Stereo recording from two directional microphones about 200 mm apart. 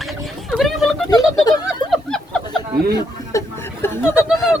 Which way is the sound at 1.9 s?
5° left (ahead or behind).